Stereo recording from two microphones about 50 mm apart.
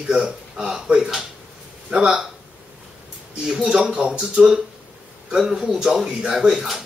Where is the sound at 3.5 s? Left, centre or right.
Centre.